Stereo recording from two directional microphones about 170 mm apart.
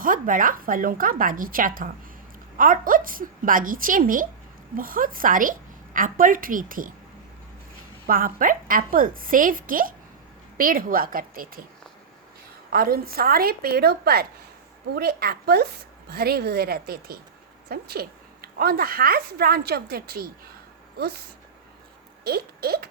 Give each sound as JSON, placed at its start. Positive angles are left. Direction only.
{"t": 0.0, "sound": "a woman's voice", "side_deg": -55}
{"t": 8.0, "sound": "a woman's voice", "side_deg": -55}
{"t": 12.7, "sound": "a woman's voice", "side_deg": -60}
{"t": 22.2, "sound": "a woman's voice", "side_deg": -65}